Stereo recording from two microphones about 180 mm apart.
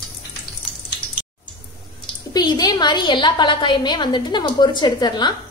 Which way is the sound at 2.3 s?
20° left (ahead or behind).